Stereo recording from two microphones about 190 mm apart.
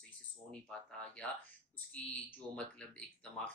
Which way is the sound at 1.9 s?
5° left (ahead or behind).